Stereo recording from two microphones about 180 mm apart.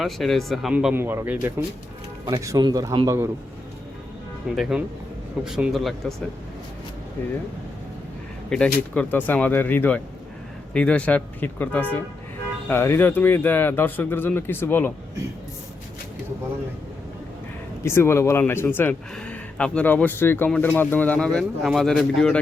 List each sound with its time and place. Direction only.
0.0 s speech: centre (ahead or behind); by 3.2 s 20° right (ahead or behind)
4.5 s speech: centre (ahead or behind)
8.4 s speech: 5° left (ahead or behind)
17.8 s speech: 15° left (ahead or behind)